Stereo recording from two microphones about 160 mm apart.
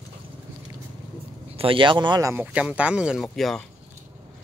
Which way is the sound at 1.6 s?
30° right (ahead or behind).